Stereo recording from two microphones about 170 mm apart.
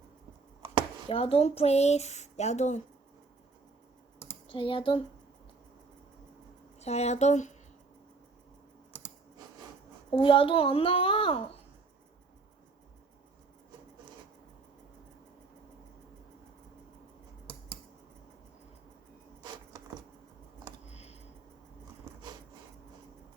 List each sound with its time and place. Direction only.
1.0 s speech: 35° left (ahead or behind)
4.3 s speech: 30° left (ahead or behind)
6.7 s speech: 40° left (ahead or behind)
10.1 s speech: 30° left (ahead or behind)
20.9 s a sound: 40° left (ahead or behind)